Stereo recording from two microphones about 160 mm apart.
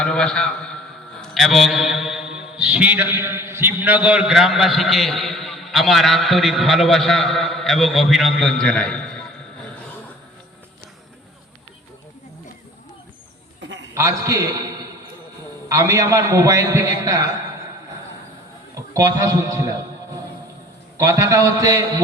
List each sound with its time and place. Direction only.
0.0 s a man's voice: 5° left (ahead or behind)
13.9 s a man's voice: 20° right (ahead or behind)
15.7 s a man's voice: 20° right (ahead or behind)
18.7 s a man's voice: 20° right (ahead or behind)
21.0 s a man's voice: 20° right (ahead or behind)